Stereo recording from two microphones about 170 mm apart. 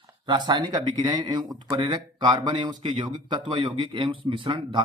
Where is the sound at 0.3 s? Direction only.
25° right (ahead or behind).